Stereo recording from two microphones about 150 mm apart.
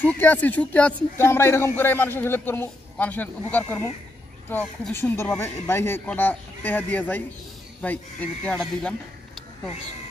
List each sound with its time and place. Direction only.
0.0 s a man's voice: 10° left (ahead or behind)